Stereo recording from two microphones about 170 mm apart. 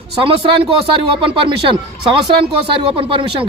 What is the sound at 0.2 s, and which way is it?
Speech, 30° right (ahead or behind).